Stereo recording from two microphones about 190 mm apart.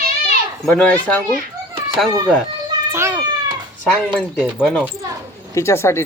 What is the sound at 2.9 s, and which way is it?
Cat, 15° right (ahead or behind).